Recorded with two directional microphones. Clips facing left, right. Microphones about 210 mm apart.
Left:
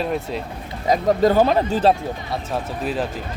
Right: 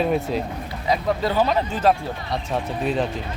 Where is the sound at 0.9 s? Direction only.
45° left (ahead or behind).